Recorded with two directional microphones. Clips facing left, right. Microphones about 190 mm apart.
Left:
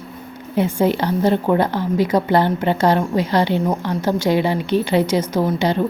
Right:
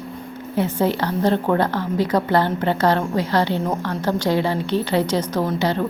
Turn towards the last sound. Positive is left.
turn(degrees=15)  # may be behind; listen again after turning